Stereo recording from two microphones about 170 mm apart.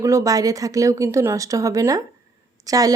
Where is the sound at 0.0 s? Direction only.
20° right (ahead or behind).